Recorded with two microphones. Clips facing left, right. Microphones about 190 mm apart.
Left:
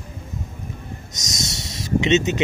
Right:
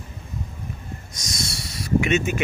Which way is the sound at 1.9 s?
20° left (ahead or behind).